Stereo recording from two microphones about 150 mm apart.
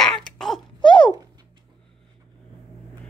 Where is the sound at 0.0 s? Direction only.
5° left (ahead or behind).